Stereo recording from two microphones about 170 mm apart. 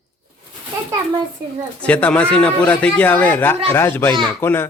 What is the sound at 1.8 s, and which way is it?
A man's voice, 5° left (ahead or behind).